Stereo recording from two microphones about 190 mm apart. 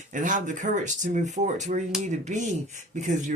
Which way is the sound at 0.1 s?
40° right (ahead or behind).